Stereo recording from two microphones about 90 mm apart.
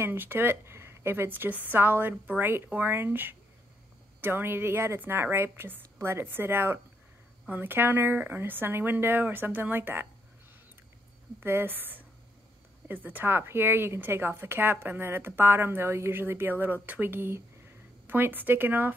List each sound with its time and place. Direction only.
0.0 s speech: 25° right (ahead or behind)
11.3 s speech: 25° right (ahead or behind)